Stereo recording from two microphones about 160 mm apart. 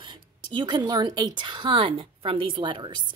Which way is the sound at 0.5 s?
30° right (ahead or behind).